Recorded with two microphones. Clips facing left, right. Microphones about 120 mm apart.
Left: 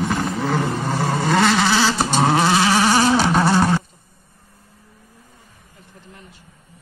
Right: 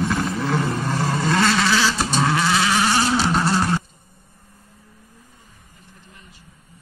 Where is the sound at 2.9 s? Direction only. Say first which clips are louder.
Left 4 dB; 50° left (ahead or behind).